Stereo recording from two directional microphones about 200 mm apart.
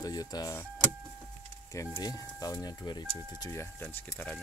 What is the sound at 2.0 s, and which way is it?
Speech, 20° left (ahead or behind).